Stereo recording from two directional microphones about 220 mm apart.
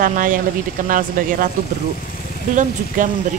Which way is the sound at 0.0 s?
40° right (ahead or behind).